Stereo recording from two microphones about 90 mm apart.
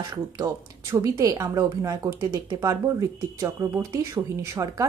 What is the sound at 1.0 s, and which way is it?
Speech, 40° right (ahead or behind).